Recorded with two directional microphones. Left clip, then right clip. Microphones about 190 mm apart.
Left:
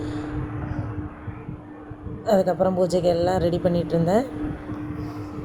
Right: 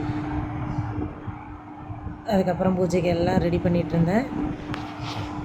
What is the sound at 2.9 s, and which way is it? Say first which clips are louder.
Speech: left 3 dB; 10° right (ahead or behind).